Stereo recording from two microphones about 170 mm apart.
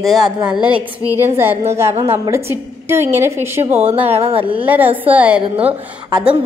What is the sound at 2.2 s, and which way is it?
A woman's voice, 15° right (ahead or behind).